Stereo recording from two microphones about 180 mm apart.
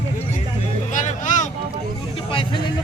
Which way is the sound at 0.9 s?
45° left (ahead or behind).